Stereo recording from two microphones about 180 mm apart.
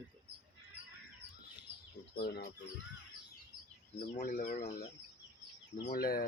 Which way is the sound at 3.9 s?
50° left (ahead or behind).